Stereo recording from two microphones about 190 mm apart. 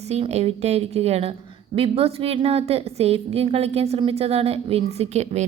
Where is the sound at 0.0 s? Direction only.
35° right (ahead or behind).